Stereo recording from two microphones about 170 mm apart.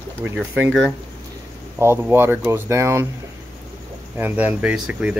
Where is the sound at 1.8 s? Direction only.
15° right (ahead or behind).